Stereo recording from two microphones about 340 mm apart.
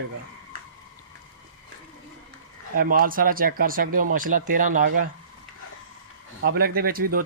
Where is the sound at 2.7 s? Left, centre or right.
Right.